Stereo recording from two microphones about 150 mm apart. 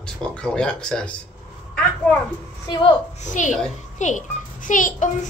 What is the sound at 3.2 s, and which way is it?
A child's voice, 55° left (ahead or behind).